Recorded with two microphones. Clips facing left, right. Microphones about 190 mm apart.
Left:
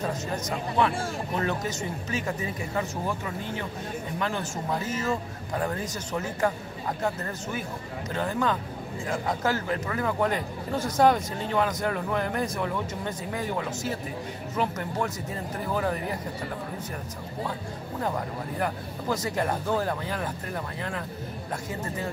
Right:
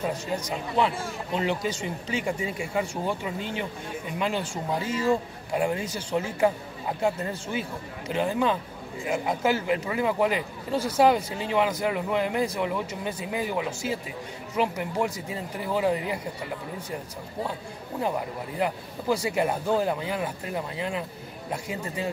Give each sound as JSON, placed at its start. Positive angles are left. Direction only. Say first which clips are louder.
{"t": 0.7, "sound": "speech", "louder": "even", "side_deg": -20}
{"t": 2.6, "sound": "speech", "louder": "right 2 dB", "side_deg": -10}
{"t": 18.0, "sound": "speech", "louder": "right 2 dB", "side_deg": -15}